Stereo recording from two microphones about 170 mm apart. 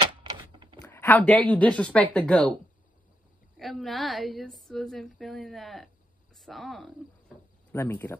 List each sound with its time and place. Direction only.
0.2 s a sound: 30° right (ahead or behind)
0.8 s a woman's voice: 10° left (ahead or behind)
3.5 s a woman's voice: centre (ahead or behind)
7.7 s speech: 15° left (ahead or behind)